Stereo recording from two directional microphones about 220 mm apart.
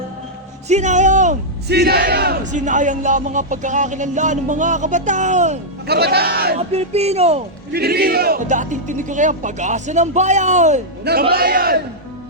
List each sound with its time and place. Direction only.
0.7 s speech: 30° right (ahead or behind)
1.6 s speech: 45° right (ahead or behind); by 5.5 s 30° right (ahead or behind)
5.9 s a man's voice: 45° right (ahead or behind)
6.6 s speech: 30° right (ahead or behind)
7.7 s speech: 45° right (ahead or behind)
11.0 s a man's voice: 45° right (ahead or behind)